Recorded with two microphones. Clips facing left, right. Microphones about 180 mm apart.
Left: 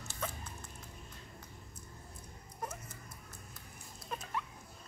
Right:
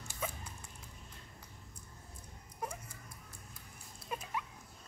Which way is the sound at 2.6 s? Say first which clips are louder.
Right 1 dB; 10° right (ahead or behind).